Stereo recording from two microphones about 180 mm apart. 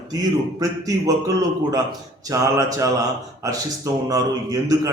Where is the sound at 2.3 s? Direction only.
20° right (ahead or behind).